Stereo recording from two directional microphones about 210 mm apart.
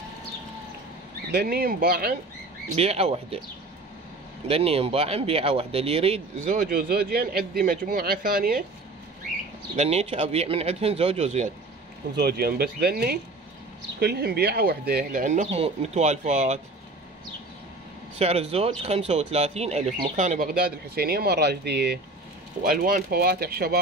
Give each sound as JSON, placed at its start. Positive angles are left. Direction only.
{"t": 1.3, "sound": "speech", "side_deg": -45}
{"t": 2.7, "sound": "speech", "side_deg": -30}
{"t": 4.5, "sound": "speech", "side_deg": -25}
{"t": 9.8, "sound": "speech", "side_deg": -30}
{"t": 12.2, "sound": "speech", "side_deg": -50}
{"t": 18.2, "sound": "speech", "side_deg": -30}